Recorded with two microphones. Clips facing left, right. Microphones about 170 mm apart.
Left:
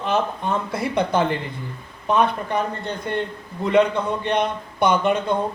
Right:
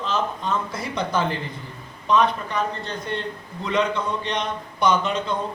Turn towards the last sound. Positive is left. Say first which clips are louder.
# left 3 dB
turn(degrees=55)  # may be behind; listen again after turning